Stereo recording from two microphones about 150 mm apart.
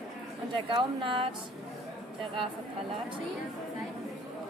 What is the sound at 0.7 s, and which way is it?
Speech, 35° right (ahead or behind).